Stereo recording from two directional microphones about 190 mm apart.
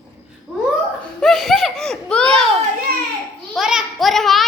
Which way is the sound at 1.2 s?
Centre (ahead or behind).